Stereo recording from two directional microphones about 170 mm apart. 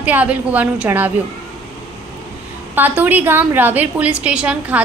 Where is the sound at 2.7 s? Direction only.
10° right (ahead or behind).